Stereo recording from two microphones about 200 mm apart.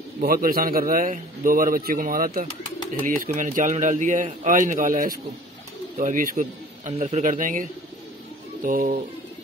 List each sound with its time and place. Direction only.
0.2 s a man's voice: 45° right (ahead or behind)
8.6 s speech: 40° right (ahead or behind)